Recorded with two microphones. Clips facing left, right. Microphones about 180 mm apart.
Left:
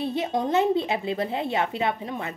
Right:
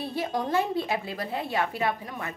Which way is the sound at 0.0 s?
20° left (ahead or behind).